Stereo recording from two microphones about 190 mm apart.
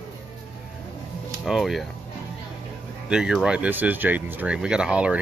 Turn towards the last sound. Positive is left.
turn(degrees=-5)  # may be behind; listen again after turning